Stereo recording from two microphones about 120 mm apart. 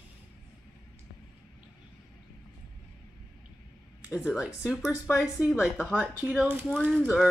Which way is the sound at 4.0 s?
25° left (ahead or behind).